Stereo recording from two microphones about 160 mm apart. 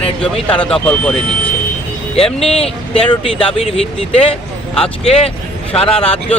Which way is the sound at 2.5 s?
35° left (ahead or behind).